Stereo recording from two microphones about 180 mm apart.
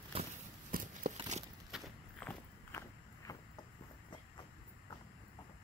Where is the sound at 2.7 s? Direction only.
15° left (ahead or behind).